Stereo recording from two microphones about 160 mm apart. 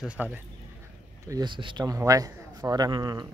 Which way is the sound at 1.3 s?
25° right (ahead or behind).